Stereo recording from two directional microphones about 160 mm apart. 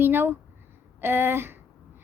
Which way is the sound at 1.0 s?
15° right (ahead or behind).